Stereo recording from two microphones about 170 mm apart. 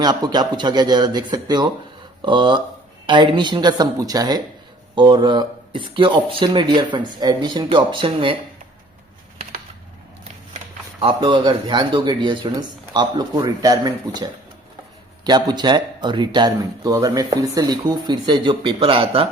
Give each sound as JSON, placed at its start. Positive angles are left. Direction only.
{"t": 0.0, "sound": "speech", "side_deg": -25}
{"t": 11.0, "sound": "speech", "side_deg": -30}